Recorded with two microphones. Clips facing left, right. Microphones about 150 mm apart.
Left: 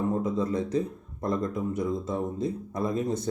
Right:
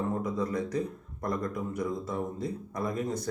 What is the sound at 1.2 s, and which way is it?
Speech, 25° left (ahead or behind).